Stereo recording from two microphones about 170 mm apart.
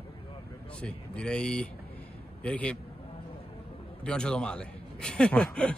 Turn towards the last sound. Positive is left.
turn(degrees=5)  # may be behind; listen again after turning